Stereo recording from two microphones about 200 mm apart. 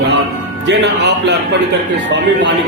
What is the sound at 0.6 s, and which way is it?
Speech, 60° right (ahead or behind).